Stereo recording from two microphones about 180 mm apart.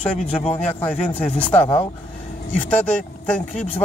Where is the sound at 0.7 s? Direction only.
10° left (ahead or behind).